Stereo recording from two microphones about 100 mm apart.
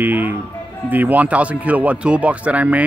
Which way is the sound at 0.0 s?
20° right (ahead or behind).